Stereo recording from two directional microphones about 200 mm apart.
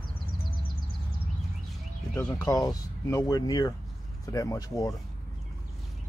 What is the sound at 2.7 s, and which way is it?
Speech, 15° left (ahead or behind).